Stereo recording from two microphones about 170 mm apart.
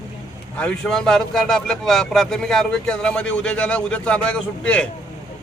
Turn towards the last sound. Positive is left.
turn(degrees=5)  # may be behind; listen again after turning